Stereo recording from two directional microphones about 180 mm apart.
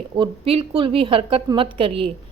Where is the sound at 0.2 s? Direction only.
30° right (ahead or behind).